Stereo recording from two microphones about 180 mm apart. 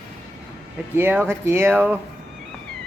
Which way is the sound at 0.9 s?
10° right (ahead or behind).